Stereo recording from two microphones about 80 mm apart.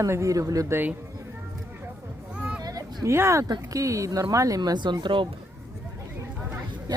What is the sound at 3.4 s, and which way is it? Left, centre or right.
Speech, right.